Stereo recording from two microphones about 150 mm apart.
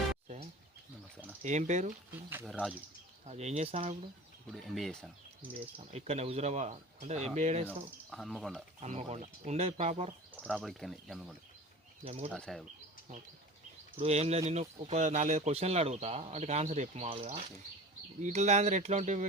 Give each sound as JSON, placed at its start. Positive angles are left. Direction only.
{"t": 1.4, "sound": "speech", "side_deg": -50}
{"t": 2.1, "sound": "speech", "side_deg": -15}
{"t": 2.5, "sound": "speech", "side_deg": 0}
{"t": 3.2, "sound": "speech", "side_deg": -45}
{"t": 4.5, "sound": "speech", "side_deg": 0}
{"t": 5.5, "sound": "speech", "side_deg": -45}
{"t": 8.1, "sound": "speech", "side_deg": 0}
{"t": 8.8, "sound": "speech", "side_deg": -45}
{"t": 10.3, "sound": "speech", "side_deg": -5}
{"t": 12.0, "sound": "speech", "side_deg": -45}
{"t": 12.3, "sound": "speech", "side_deg": 5}
{"t": 14.0, "sound": "speech", "side_deg": -45}